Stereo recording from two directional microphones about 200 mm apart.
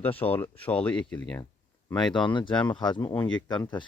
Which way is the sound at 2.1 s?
25° left (ahead or behind).